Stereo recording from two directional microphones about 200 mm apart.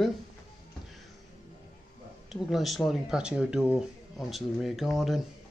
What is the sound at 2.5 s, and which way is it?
Speech, centre (ahead or behind).